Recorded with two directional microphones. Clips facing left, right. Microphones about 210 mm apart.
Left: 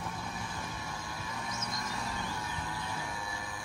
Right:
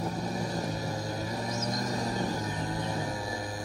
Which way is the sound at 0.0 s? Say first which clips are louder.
Right 8 dB; 40° right (ahead or behind).